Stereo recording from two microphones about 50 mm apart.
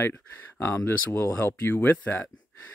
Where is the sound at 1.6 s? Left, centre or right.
Left.